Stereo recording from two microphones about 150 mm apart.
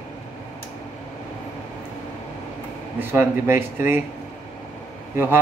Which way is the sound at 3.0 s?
15° right (ahead or behind).